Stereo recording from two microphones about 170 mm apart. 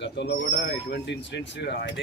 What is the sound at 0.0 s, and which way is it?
Speech, 90° left.